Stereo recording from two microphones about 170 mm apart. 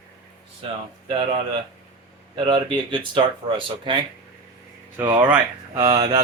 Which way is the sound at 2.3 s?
30° right (ahead or behind).